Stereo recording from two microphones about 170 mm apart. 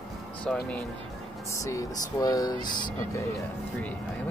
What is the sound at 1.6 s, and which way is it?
Speech, 20° left (ahead or behind).